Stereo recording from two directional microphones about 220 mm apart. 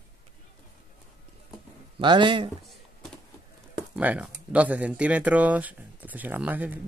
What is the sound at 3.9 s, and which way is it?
Speech, 5° right (ahead or behind).